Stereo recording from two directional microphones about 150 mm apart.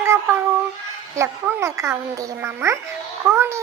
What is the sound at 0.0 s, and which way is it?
Child singing, 15° right (ahead or behind).